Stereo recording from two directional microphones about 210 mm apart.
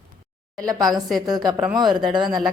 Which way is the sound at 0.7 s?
20° right (ahead or behind).